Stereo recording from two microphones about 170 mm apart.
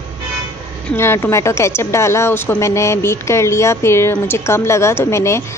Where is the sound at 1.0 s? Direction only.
15° left (ahead or behind).